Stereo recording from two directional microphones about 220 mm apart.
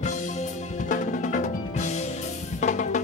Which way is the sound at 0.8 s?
35° left (ahead or behind).